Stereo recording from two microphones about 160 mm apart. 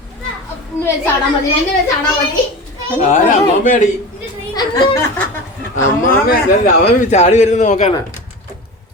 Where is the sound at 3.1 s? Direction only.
50° left (ahead or behind).